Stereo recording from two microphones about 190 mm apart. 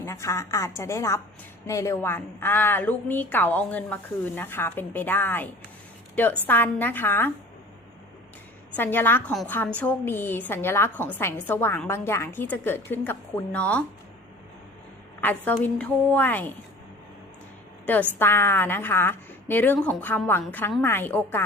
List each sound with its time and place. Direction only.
0.0 s a woman's voice: 15° left (ahead or behind)
8.7 s a woman's voice: 10° left (ahead or behind)
15.2 s a woman's voice: 10° left (ahead or behind)
18.2 s a woman's voice: 10° left (ahead or behind)